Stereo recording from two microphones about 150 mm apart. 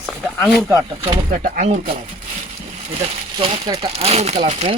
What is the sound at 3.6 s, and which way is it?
Speech, 25° right (ahead or behind).